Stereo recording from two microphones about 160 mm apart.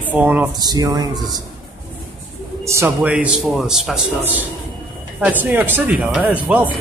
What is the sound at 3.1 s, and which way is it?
A man's voice, 5° right (ahead or behind).